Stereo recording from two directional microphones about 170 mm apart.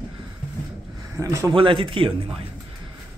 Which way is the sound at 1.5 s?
30° right (ahead or behind).